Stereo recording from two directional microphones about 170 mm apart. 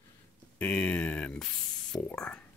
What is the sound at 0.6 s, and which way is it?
Speech, 10° left (ahead or behind).